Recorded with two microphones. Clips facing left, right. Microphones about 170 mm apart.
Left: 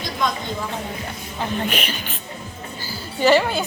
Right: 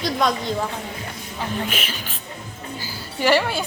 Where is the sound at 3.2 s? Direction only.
20° left (ahead or behind).